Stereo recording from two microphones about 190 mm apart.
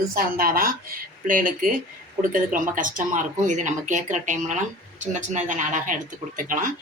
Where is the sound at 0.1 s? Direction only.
50° right (ahead or behind).